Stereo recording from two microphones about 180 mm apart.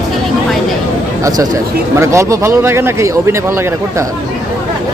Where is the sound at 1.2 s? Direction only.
20° right (ahead or behind).